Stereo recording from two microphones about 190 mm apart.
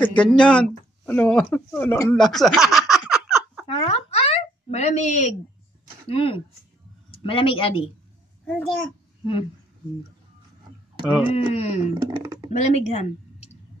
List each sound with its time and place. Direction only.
0.1 s speech: 5° left (ahead or behind)
3.6 s a sound: 30° left (ahead or behind)
6.0 s speech: 30° left (ahead or behind)
9.2 s speech: 25° left (ahead or behind)
11.0 s speech: 30° left (ahead or behind)
11.9 s speech: 20° right (ahead or behind)
12.5 s speech: 35° left (ahead or behind)